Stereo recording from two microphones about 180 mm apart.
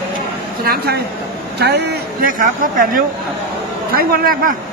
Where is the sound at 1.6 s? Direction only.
65° right (ahead or behind).